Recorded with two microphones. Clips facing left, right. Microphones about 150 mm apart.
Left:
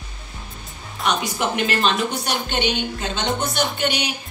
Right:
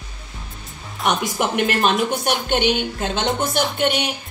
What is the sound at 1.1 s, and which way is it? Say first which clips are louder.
A woman's voice: right 2 dB; 55° right (ahead or behind).